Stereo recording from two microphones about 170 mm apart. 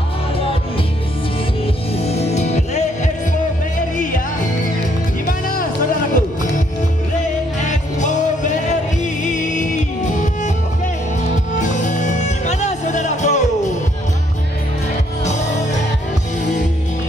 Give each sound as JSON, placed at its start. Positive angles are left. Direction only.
{"t": 2.0, "sound": "music", "side_deg": 40}
{"t": 7.6, "sound": "music", "side_deg": 45}
{"t": 11.6, "sound": "music", "side_deg": 45}